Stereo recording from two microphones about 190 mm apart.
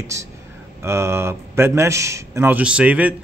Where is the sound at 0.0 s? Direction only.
15° right (ahead or behind).